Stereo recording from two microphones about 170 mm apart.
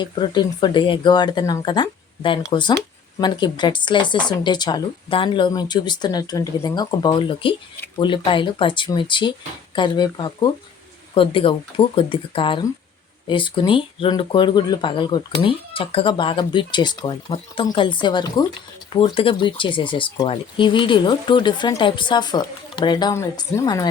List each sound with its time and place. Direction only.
0.0 s speech: 25° left (ahead or behind)